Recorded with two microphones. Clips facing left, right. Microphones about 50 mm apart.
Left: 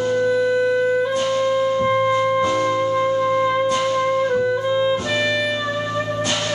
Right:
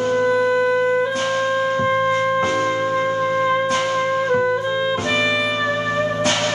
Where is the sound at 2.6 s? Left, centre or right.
Right.